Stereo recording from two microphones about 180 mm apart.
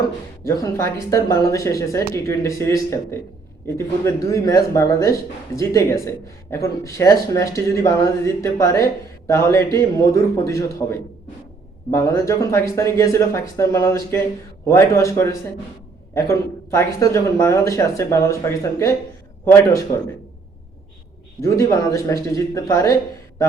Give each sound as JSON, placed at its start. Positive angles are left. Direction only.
{"t": 0.4, "sound": "speech", "side_deg": 15}
{"t": 11.9, "sound": "speech", "side_deg": 15}
{"t": 21.4, "sound": "speech", "side_deg": 15}